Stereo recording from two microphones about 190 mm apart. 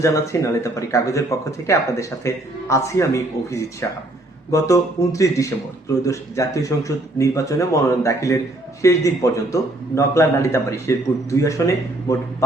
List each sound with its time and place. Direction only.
0.0 s speech: 15° left (ahead or behind)